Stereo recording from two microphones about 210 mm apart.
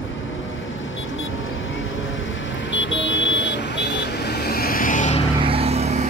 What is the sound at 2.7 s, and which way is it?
Vehicle, 60° left (ahead or behind).